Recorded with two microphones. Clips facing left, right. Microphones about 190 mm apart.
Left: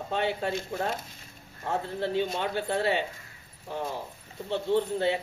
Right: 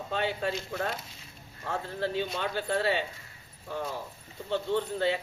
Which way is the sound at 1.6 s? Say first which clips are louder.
Left 2 dB; 20° left (ahead or behind).